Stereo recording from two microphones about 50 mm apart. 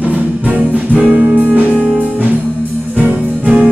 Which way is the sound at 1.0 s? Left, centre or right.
Centre.